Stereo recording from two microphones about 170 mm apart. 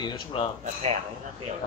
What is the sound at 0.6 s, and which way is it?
Speech, 40° right (ahead or behind).